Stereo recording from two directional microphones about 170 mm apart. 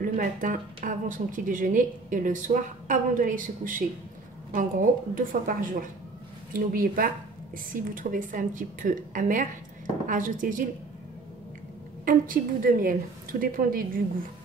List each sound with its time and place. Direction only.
0.0 s a woman's voice: 50° right (ahead or behind)
12.0 s a woman's voice: 55° right (ahead or behind)